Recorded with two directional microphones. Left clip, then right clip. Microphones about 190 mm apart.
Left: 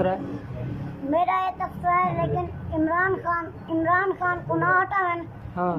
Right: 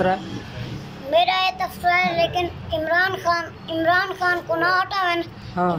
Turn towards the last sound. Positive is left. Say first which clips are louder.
# right 4 dB
turn(degrees=-5)  # may be behind; listen again after turning